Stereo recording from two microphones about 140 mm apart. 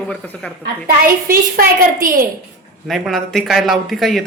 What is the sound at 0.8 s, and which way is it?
Speech, 90° right.